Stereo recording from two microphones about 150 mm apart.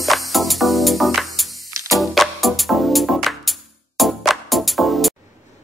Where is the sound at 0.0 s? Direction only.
Centre (ahead or behind).